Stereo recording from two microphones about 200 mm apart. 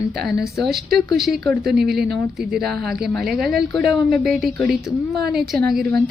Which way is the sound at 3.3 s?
50° right (ahead or behind).